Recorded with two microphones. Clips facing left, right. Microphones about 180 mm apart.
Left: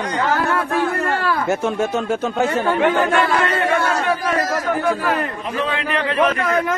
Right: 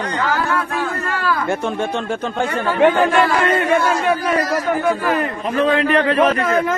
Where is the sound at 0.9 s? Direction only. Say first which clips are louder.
Left 3 dB; 65° left (ahead or behind).